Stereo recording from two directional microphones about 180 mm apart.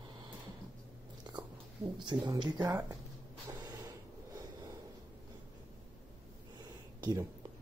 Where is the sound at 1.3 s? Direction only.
25° right (ahead or behind).